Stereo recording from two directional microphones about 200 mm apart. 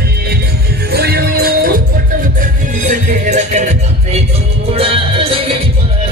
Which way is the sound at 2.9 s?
35° right (ahead or behind).